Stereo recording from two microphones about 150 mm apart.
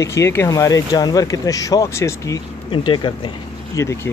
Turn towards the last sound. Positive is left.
turn(degrees=20)  # may be behind; listen again after turning